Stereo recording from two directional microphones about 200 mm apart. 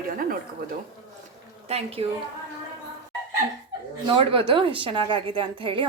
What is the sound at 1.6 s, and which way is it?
Speech, 30° right (ahead or behind).